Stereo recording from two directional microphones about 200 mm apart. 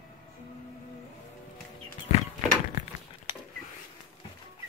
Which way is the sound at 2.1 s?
35° left (ahead or behind).